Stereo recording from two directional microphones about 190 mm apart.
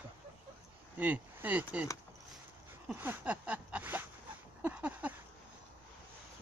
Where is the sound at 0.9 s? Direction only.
10° right (ahead or behind).